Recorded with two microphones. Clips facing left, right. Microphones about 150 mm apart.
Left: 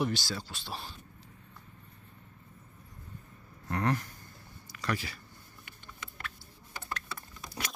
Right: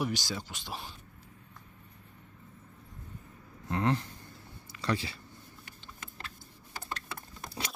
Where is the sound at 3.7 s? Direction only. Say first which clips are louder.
Right 1 dB; 20° right (ahead or behind).